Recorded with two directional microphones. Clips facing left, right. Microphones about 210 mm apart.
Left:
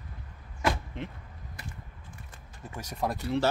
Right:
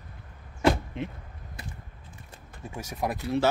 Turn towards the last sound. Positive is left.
turn(degrees=-10)  # may be behind; listen again after turning